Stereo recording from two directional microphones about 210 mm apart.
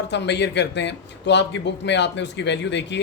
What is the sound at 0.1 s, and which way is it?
Speech, 55° left (ahead or behind).